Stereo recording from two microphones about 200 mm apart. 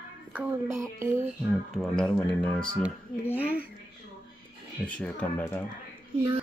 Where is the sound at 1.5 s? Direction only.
5° left (ahead or behind).